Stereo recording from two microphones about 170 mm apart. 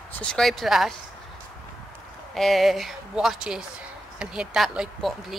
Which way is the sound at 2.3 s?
Centre (ahead or behind).